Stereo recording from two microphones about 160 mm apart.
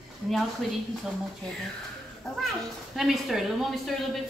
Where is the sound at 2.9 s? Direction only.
Centre (ahead or behind).